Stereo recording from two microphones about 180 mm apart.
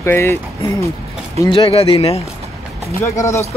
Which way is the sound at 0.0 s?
15° left (ahead or behind).